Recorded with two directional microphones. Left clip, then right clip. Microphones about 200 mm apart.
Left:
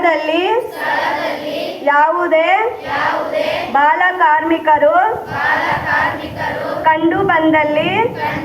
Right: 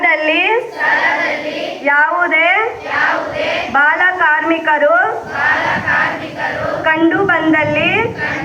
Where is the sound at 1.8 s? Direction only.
35° right (ahead or behind).